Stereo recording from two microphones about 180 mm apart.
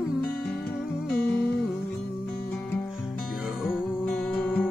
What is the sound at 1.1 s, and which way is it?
Music, 5° left (ahead or behind).